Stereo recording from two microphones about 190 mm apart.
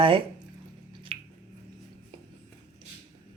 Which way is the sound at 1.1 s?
30° right (ahead or behind).